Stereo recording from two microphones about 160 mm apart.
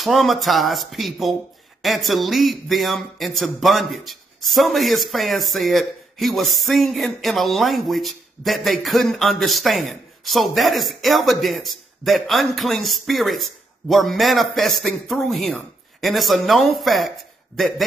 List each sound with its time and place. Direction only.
0.0 s speech: centre (ahead or behind)